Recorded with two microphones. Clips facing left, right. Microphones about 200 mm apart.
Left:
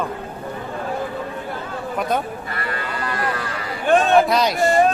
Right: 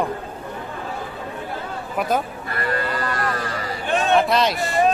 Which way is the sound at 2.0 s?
5° right (ahead or behind).